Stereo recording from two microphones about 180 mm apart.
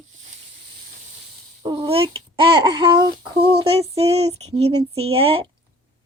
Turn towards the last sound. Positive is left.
turn(degrees=-30)  # may be behind; listen again after turning